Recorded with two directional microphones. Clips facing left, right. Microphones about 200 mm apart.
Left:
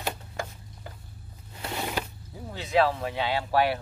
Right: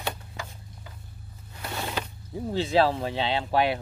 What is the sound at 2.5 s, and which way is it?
Speech, 30° right (ahead or behind).